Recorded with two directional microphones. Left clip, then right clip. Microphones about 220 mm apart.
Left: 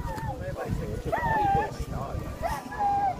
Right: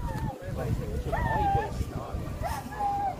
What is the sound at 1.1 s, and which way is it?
Speech, 50° left (ahead or behind).